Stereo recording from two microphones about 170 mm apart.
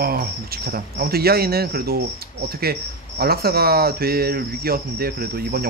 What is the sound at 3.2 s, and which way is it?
Speech, 65° right (ahead or behind).